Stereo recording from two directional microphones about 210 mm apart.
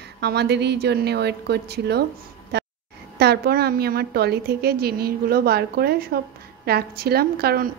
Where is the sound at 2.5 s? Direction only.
50° right (ahead or behind).